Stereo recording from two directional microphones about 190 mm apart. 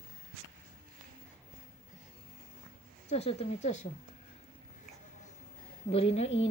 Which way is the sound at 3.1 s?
35° left (ahead or behind).